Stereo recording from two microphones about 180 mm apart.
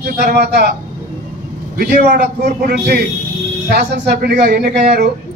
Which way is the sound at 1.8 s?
60° right (ahead or behind).